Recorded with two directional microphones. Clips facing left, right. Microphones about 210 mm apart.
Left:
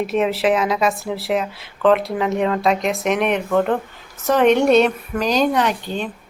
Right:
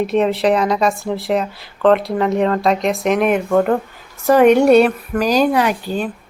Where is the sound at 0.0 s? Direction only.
Centre (ahead or behind).